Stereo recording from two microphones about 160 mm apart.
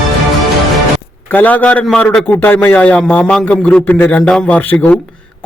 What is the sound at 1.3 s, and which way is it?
A man's voice, 10° left (ahead or behind).